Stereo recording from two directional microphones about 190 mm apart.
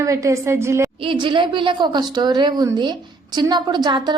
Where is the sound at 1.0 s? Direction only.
25° right (ahead or behind).